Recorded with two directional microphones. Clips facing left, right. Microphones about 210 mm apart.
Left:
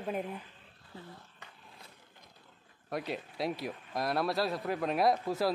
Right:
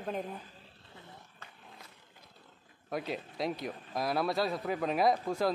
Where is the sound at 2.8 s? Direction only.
Centre (ahead or behind).